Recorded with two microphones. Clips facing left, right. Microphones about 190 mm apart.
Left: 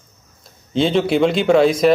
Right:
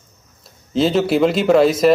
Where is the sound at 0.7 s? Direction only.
Centre (ahead or behind).